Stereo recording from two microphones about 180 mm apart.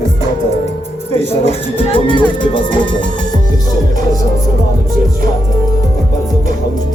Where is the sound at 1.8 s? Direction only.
30° left (ahead or behind).